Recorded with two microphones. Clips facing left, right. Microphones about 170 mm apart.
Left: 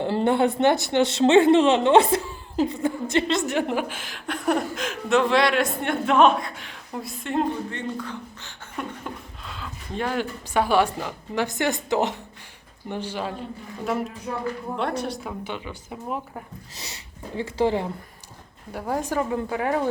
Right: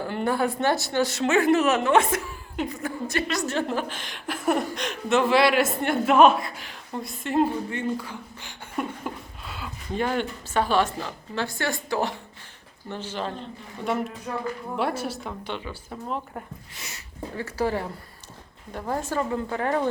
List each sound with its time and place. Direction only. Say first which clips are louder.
0.0 s speech: left 4 dB; 25° left (ahead or behind); by 10.2 s centre (ahead or behind)
10.5 s a woman's voice: left 2 dB; 10° left (ahead or behind)
14.8 s speech: right 2 dB; 5° right (ahead or behind)
15.3 s a woman's voice: left 1 dB; 5° left (ahead or behind)
17.3 s a woman's voice: left 4 dB; 20° left (ahead or behind)